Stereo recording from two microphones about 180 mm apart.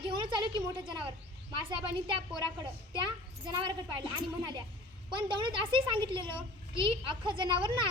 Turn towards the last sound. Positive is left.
turn(degrees=-30)  # may be behind; listen again after turning